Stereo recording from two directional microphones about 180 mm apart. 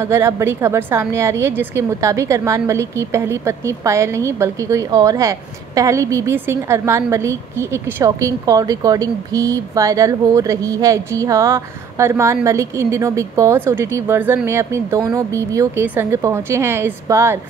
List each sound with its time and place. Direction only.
0.0 s a woman's voice: 15° right (ahead or behind)